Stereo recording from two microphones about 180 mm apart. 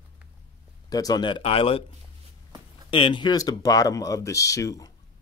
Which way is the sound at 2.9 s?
25° left (ahead or behind).